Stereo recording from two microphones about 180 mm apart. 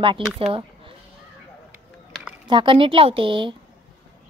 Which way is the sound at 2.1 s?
5° right (ahead or behind).